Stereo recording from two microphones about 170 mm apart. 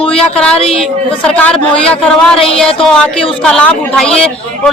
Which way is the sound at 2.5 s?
5° left (ahead or behind).